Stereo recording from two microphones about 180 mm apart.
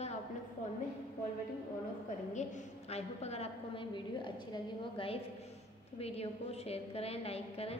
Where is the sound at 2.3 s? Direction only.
40° left (ahead or behind).